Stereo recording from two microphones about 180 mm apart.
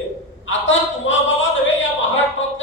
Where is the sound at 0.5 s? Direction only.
90° left.